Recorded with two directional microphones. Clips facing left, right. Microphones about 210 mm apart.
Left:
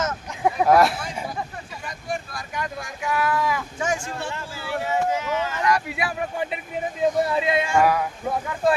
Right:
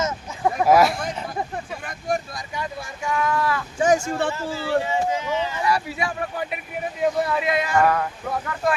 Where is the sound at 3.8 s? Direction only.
35° right (ahead or behind).